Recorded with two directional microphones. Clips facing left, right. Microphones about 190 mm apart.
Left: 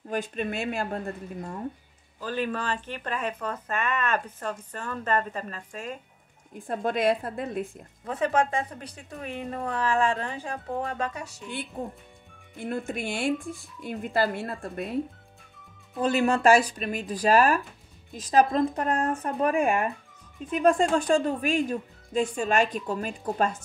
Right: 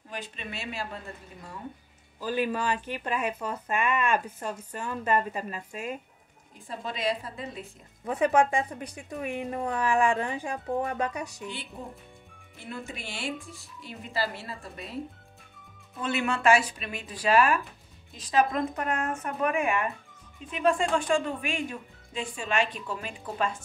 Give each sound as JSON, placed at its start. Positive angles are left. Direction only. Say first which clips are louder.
{"t": 0.1, "sound": "speech", "louder": "left 9 dB", "side_deg": 50}
{"t": 2.1, "sound": "speech", "louder": "right 1 dB", "side_deg": -10}
{"t": 6.7, "sound": "speech", "louder": "left 6 dB", "side_deg": 55}
{"t": 8.1, "sound": "speech", "louder": "right 2 dB", "side_deg": -15}
{"t": 11.8, "sound": "speech", "louder": "left 6 dB", "side_deg": 50}
{"t": 16.0, "sound": "speech", "louder": "left 6 dB", "side_deg": 35}